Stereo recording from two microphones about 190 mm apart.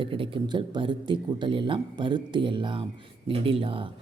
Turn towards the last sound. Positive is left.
turn(degrees=-30)  # may be behind; listen again after turning